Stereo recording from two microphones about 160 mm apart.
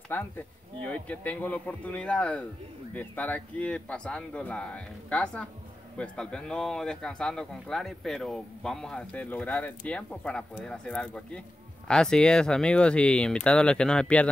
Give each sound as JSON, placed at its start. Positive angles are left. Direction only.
{"t": 0.1, "sound": "speech", "side_deg": 15}